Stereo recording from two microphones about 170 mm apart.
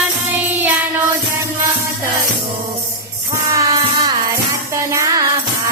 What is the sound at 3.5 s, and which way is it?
Music, 20° right (ahead or behind).